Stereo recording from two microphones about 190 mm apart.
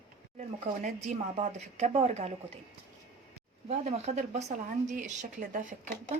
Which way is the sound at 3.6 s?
35° right (ahead or behind).